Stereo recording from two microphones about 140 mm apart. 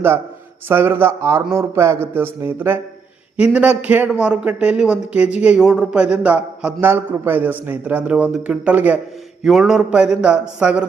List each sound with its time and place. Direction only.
0.7 s a man's voice: 15° right (ahead or behind)